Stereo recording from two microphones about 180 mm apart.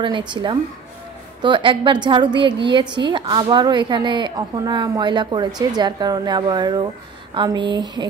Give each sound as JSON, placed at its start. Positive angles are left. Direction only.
{"t": 0.0, "sound": "a woman's voice", "side_deg": -25}